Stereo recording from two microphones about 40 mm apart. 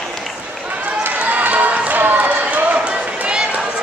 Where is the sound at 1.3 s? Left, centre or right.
Right.